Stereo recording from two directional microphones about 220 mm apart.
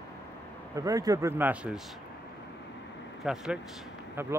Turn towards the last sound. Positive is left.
turn(degrees=-10)  # may be behind; listen again after turning